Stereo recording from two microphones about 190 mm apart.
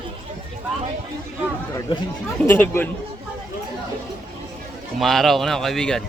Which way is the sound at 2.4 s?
10° left (ahead or behind).